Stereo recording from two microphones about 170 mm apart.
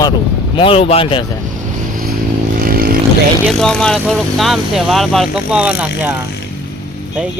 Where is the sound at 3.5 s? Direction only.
5° left (ahead or behind).